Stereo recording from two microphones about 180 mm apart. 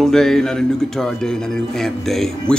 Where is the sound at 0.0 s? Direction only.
5° left (ahead or behind).